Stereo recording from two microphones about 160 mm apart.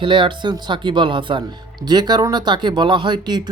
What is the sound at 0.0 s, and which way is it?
Speech, 30° right (ahead or behind).